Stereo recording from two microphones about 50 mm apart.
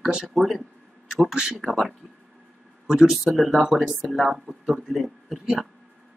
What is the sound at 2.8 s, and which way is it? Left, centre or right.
Speech, centre.